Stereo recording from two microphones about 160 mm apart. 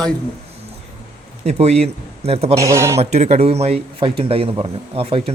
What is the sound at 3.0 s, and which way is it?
Speech, 45° right (ahead or behind).